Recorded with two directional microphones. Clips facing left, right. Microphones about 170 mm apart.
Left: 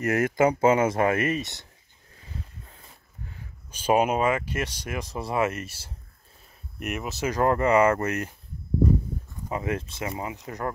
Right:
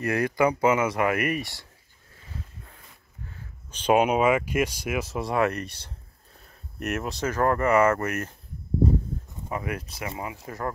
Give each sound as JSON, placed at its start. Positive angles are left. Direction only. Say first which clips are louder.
{"t": 0.0, "sound": "speech", "louder": "left 1 dB", "side_deg": 20}
{"t": 3.3, "sound": "a sound", "louder": "even", "side_deg": 10}
{"t": 4.3, "sound": "speech", "louder": "right 4 dB", "side_deg": -10}
{"t": 6.8, "sound": "speech", "louder": "right 2 dB", "side_deg": 0}
{"t": 7.2, "sound": "speech", "louder": "left 1 dB", "side_deg": 20}
{"t": 9.5, "sound": "speech", "louder": "left 2 dB", "side_deg": 25}